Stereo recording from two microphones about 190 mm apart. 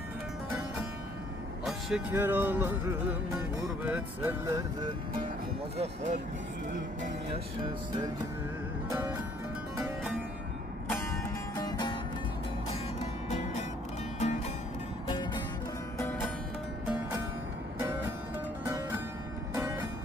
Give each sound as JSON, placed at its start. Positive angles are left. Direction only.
{"t": 1.6, "sound": "music", "side_deg": -5}
{"t": 5.7, "sound": "speech", "side_deg": -35}
{"t": 7.6, "sound": "music", "side_deg": -25}
{"t": 8.9, "sound": "music", "side_deg": -10}
{"t": 10.8, "sound": "music", "side_deg": 10}
{"t": 12.6, "sound": "music", "side_deg": 35}
{"t": 15.0, "sound": "music", "side_deg": 25}
{"t": 16.0, "sound": "music", "side_deg": 15}
{"t": 18.6, "sound": "music", "side_deg": -15}